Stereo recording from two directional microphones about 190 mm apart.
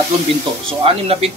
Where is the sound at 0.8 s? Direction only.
30° right (ahead or behind).